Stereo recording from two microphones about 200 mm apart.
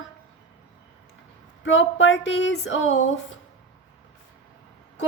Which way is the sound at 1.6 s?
70° left (ahead or behind).